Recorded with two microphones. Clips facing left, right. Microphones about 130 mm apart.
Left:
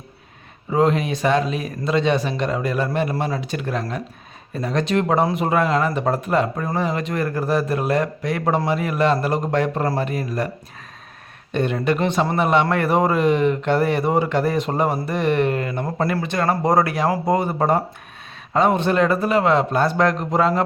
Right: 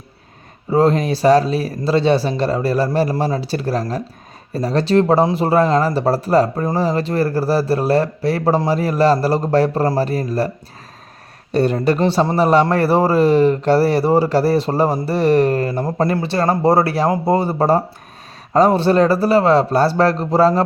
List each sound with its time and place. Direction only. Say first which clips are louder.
0.7 s a man's voice: right 4 dB; 35° right (ahead or behind)
11.5 s a man's voice: right 5 dB; 35° right (ahead or behind)